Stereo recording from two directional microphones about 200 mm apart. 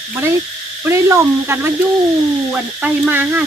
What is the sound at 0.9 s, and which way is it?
Speech, 15° right (ahead or behind).